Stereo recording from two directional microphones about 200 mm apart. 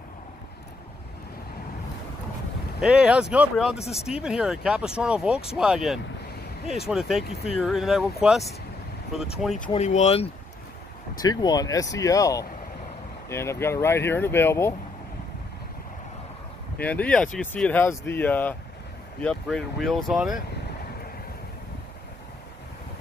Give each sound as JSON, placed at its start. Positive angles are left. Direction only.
{"t": 2.8, "sound": "speech", "side_deg": -5}
{"t": 9.8, "sound": "speech", "side_deg": 35}
{"t": 11.2, "sound": "speech", "side_deg": 20}
{"t": 16.8, "sound": "speech", "side_deg": 5}